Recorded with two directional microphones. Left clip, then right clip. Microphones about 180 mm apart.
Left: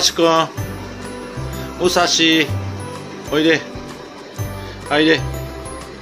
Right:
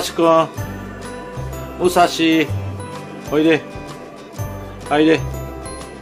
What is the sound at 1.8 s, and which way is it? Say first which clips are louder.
Speech: even; 10° right (ahead or behind).